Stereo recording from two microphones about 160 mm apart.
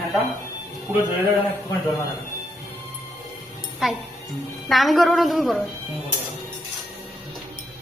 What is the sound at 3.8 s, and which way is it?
A woman's voice, 5° right (ahead or behind).